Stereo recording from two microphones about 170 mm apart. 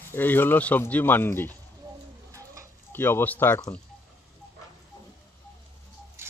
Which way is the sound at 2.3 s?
20° right (ahead or behind).